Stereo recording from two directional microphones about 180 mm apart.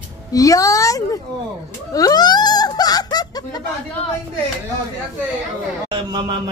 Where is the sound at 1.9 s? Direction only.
20° left (ahead or behind).